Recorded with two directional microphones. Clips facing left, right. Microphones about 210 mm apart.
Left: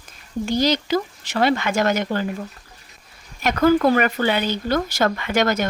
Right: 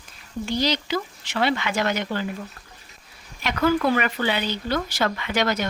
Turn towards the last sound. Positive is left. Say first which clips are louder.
# left 4 dB
turn(degrees=50)  # may be behind; listen again after turning